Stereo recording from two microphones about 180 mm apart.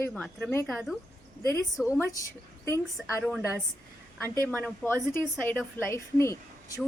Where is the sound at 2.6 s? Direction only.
15° left (ahead or behind).